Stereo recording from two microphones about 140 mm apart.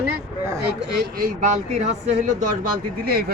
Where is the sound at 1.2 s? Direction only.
75° right (ahead or behind); by 2.3 s 60° right (ahead or behind).